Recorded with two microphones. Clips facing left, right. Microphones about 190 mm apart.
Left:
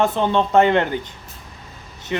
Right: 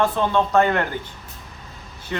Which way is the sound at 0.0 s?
20° left (ahead or behind).